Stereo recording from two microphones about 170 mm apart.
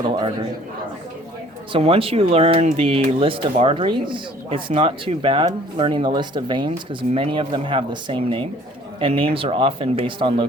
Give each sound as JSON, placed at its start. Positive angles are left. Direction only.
{"t": 1.7, "sound": "speech", "side_deg": -35}